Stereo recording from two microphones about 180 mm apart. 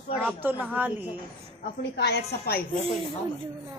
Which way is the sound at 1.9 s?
70° left (ahead or behind).